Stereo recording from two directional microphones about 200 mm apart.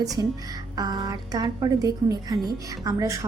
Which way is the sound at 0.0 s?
15° right (ahead or behind).